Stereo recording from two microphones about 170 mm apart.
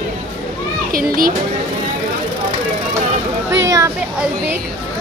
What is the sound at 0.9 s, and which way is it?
Speech, 55° right (ahead or behind).